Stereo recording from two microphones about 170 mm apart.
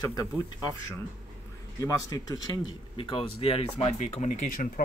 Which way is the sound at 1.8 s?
20° left (ahead or behind).